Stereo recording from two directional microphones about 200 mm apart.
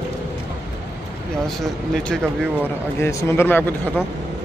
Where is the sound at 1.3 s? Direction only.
Centre (ahead or behind).